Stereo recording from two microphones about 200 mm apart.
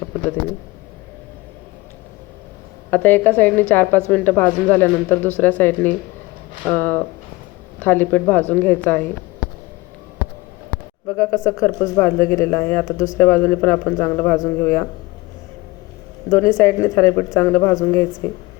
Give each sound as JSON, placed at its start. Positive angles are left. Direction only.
{"t": 2.9, "sound": "a woman's voice", "side_deg": 10}
{"t": 11.1, "sound": "a woman's voice", "side_deg": 15}
{"t": 16.6, "sound": "a woman's voice", "side_deg": 15}